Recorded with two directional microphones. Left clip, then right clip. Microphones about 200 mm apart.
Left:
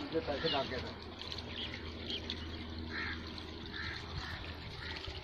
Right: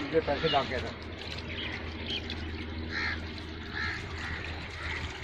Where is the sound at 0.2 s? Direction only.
30° right (ahead or behind).